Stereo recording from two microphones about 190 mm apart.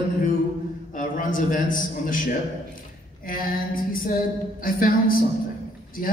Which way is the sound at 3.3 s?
50° left (ahead or behind).